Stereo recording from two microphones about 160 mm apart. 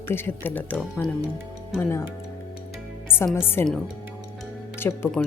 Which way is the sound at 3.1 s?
15° left (ahead or behind).